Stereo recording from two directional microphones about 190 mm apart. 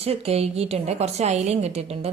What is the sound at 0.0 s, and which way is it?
A woman's voice, 30° right (ahead or behind).